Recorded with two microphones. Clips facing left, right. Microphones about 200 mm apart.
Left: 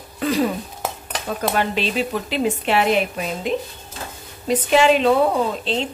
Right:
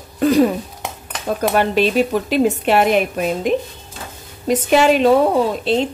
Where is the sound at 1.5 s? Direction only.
45° right (ahead or behind).